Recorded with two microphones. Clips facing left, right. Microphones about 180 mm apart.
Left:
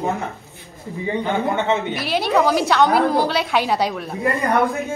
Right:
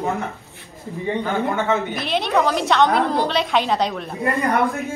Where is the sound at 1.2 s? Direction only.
20° left (ahead or behind).